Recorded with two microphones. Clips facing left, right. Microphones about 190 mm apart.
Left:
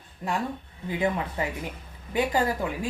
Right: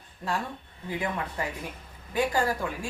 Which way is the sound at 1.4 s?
20° left (ahead or behind).